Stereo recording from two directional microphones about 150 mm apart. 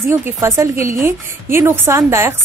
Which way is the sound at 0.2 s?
20° right (ahead or behind).